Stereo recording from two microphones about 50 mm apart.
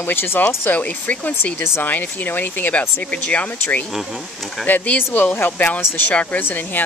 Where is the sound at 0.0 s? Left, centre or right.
Left.